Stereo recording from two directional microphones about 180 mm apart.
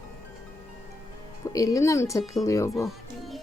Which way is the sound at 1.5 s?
20° left (ahead or behind).